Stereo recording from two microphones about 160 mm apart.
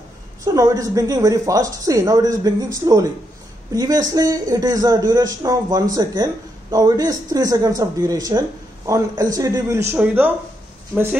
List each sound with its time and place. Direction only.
0.5 s speech: 20° right (ahead or behind)